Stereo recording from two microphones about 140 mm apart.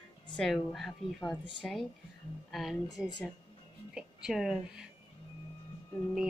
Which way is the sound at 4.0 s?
5° right (ahead or behind).